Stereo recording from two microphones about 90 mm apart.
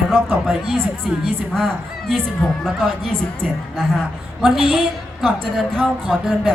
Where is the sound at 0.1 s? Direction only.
5° left (ahead or behind).